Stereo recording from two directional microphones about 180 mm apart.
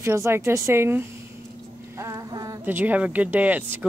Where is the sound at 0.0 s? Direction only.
15° right (ahead or behind).